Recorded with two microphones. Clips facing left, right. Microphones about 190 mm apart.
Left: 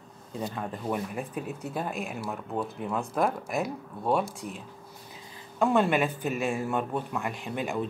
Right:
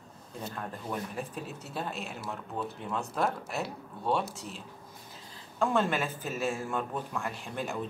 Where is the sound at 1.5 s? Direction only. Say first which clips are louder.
Left 5 dB; 55° left (ahead or behind).